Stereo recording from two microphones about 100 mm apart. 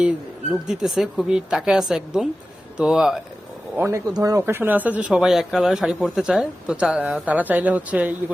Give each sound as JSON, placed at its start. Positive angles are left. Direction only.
{"t": 0.7, "sound": "a woman's voice", "side_deg": -5}
{"t": 3.8, "sound": "a woman's voice", "side_deg": -30}